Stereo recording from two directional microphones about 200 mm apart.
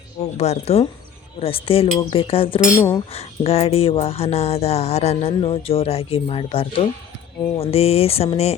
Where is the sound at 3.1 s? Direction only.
30° left (ahead or behind).